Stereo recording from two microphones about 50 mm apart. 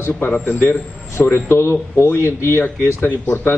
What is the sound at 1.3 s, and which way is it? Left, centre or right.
A man's voice, left.